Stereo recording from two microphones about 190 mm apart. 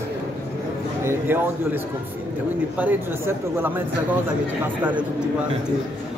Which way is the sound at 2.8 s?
10° right (ahead or behind).